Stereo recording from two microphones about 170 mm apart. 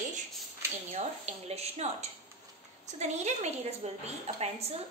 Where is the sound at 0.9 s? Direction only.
40° right (ahead or behind).